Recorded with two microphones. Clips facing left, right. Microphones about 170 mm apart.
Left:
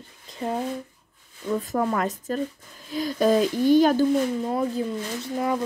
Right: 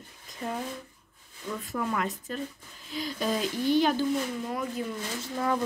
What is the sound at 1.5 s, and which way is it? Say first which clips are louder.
Speech: left 7 dB; 40° left (ahead or behind).